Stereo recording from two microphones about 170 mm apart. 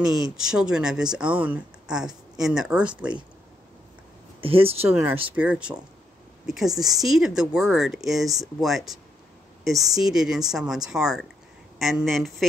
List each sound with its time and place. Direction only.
0.0 s speech: 5° right (ahead or behind)
4.4 s speech: 35° right (ahead or behind)
5.3 s speech: 5° right (ahead or behind)